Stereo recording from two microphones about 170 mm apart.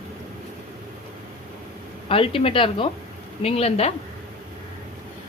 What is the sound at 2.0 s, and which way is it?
Speech, 35° left (ahead or behind).